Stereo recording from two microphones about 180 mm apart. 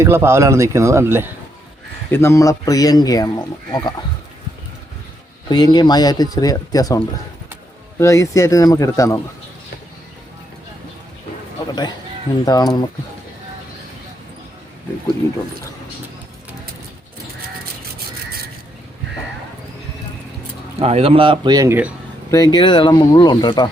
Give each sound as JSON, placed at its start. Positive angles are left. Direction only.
{"t": 0.0, "sound": "speech", "side_deg": -15}
{"t": 2.0, "sound": "speech", "side_deg": 15}
{"t": 5.5, "sound": "speech", "side_deg": 20}
{"t": 11.7, "sound": "speech", "side_deg": 25}
{"t": 20.7, "sound": "speech", "side_deg": -35}
{"t": 22.3, "sound": "speech", "side_deg": 20}